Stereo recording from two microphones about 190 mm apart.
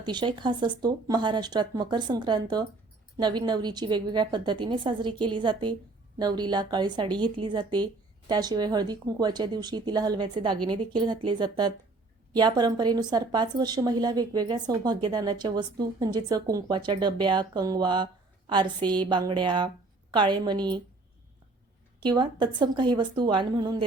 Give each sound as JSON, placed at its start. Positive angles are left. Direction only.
{"t": 0.0, "sound": "a woman's voice", "side_deg": -25}
{"t": 22.0, "sound": "a woman's voice", "side_deg": -25}